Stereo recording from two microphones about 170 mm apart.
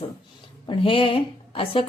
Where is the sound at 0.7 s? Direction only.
30° left (ahead or behind).